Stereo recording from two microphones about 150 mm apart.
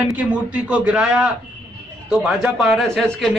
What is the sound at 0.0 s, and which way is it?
A man's voice, 10° right (ahead or behind).